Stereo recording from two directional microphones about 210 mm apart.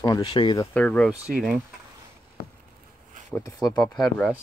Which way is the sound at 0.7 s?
5° left (ahead or behind).